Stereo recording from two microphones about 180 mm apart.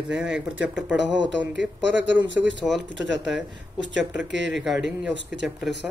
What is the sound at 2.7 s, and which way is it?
Speech, centre (ahead or behind).